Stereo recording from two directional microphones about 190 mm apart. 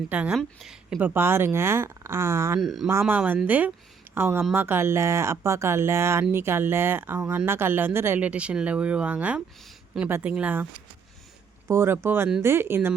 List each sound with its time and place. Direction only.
0.1 s speech: 5° right (ahead or behind)
2.6 s speech: centre (ahead or behind)
11.7 s speech: 10° right (ahead or behind)